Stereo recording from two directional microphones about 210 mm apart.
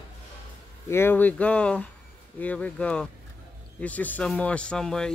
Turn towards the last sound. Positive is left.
turn(degrees=5)  # may be behind; listen again after turning